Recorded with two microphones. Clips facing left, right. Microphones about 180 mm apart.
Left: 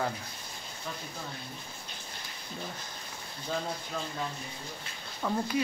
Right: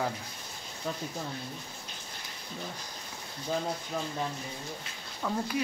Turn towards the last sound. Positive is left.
turn(degrees=5)  # may be behind; listen again after turning